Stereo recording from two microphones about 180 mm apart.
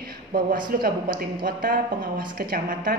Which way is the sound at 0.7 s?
55° right (ahead or behind).